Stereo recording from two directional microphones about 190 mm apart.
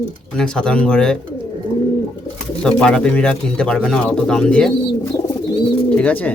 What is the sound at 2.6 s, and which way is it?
Speech, 5° left (ahead or behind).